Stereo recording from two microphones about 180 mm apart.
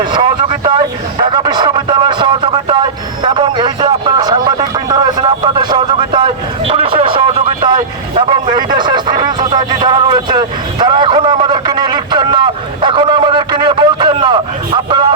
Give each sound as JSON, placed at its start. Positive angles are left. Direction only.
{"t": 0.1, "sound": "a man's voice", "side_deg": -25}